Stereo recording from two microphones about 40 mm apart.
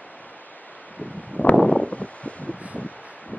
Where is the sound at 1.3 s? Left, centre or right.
Left.